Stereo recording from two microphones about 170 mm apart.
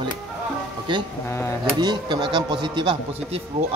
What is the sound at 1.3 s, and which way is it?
Speech, 10° left (ahead or behind).